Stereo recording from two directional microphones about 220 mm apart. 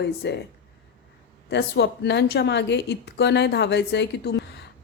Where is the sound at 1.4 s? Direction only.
50° left (ahead or behind).